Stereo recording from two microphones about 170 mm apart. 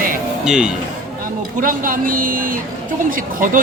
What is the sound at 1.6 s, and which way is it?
Speech, 55° right (ahead or behind).